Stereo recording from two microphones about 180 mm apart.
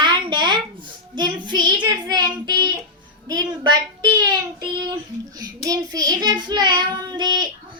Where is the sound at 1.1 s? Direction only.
25° right (ahead or behind).